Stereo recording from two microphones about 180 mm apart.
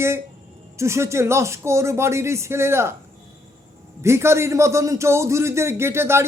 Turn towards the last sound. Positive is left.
turn(degrees=-15)  # may be behind; listen again after turning